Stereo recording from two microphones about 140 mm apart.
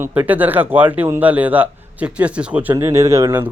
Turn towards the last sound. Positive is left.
turn(degrees=-20)  # may be behind; listen again after turning